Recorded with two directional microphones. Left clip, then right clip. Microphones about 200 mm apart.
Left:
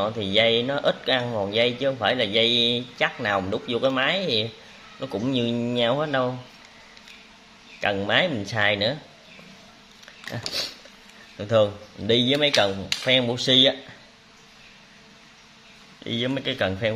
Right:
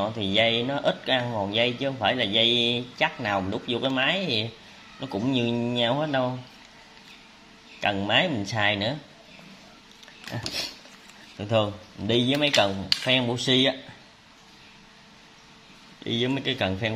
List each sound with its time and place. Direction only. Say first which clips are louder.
0.0 s a man's voice: left 2 dB; 15° left (ahead or behind)
7.8 s a man's voice: left 1 dB; 15° left (ahead or behind)
10.3 s a man's voice: left 2 dB; 15° left (ahead or behind)
16.0 s speech: even; 5° left (ahead or behind)